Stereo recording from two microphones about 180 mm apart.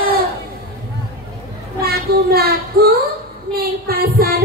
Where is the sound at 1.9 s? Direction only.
60° right (ahead or behind).